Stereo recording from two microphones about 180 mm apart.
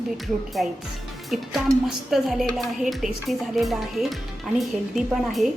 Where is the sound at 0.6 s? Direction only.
Centre (ahead or behind).